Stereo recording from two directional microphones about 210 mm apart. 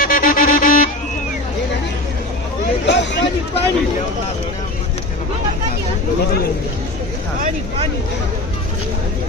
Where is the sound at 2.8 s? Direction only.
55° left (ahead or behind).